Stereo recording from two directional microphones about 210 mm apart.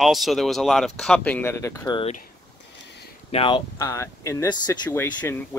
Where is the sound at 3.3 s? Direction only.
25° left (ahead or behind).